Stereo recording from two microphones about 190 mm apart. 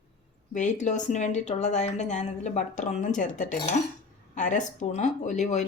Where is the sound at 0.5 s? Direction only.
40° left (ahead or behind).